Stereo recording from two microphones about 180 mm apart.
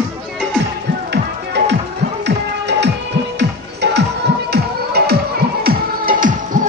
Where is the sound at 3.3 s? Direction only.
70° right (ahead or behind).